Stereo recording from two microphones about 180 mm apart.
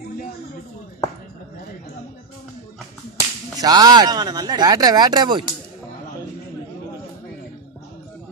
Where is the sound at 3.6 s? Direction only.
20° right (ahead or behind).